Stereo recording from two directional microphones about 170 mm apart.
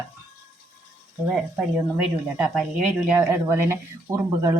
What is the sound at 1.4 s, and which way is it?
Speech, 5° right (ahead or behind).